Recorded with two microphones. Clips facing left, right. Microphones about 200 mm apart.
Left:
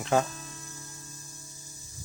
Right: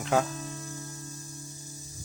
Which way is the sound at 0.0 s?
Centre (ahead or behind).